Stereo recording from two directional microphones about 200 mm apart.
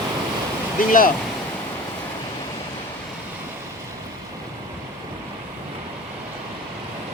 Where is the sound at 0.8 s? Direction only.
45° left (ahead or behind).